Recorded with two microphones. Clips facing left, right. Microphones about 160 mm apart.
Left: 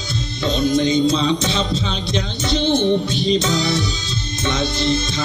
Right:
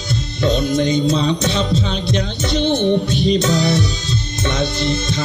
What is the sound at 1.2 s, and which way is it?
Music, 40° right (ahead or behind).